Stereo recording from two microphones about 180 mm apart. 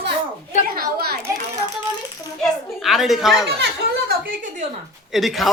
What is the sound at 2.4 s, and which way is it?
A woman's voice, centre (ahead or behind).